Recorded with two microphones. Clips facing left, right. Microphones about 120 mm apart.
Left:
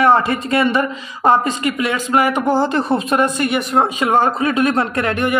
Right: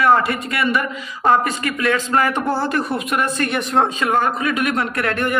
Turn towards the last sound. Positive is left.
turn(degrees=20)  # may be behind; listen again after turning